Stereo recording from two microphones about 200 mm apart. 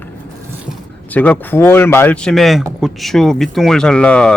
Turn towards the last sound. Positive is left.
turn(degrees=5)  # may be behind; listen again after turning